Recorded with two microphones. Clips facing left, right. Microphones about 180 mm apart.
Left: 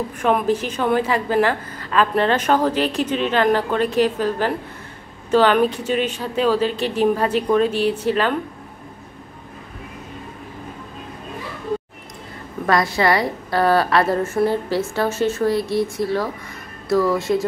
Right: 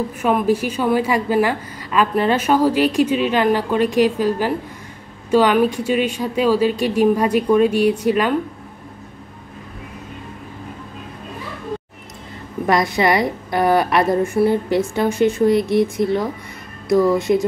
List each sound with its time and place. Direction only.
0.2 s a woman's voice: 5° right (ahead or behind)
12.6 s a woman's voice: 20° right (ahead or behind)